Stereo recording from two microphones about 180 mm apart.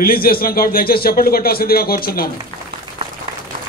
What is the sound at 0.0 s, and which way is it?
A man's voice, 55° left (ahead or behind).